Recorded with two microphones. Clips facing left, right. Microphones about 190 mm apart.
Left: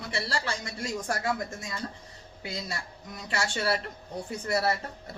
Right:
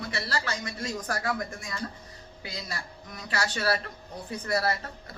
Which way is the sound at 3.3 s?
25° left (ahead or behind).